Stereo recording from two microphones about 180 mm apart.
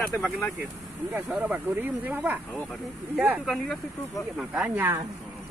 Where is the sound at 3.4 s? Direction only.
Centre (ahead or behind).